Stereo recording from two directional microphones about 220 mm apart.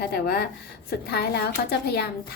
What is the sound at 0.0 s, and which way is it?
A woman's voice, 45° left (ahead or behind).